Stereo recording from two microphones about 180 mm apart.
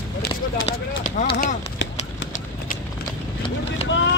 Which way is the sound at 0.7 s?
35° left (ahead or behind).